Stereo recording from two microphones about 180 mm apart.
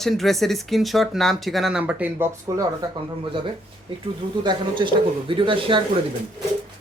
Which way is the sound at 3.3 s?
30° right (ahead or behind).